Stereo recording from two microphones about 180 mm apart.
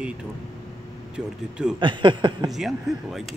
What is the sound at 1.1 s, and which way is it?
Speech, 5° right (ahead or behind).